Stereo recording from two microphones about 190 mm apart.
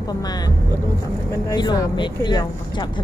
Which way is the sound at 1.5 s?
20° left (ahead or behind).